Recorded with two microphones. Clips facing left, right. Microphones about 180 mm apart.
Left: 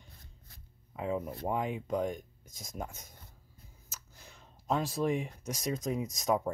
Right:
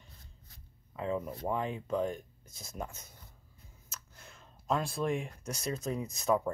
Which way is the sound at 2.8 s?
Centre (ahead or behind).